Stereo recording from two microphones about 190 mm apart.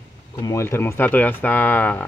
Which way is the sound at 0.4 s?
15° left (ahead or behind).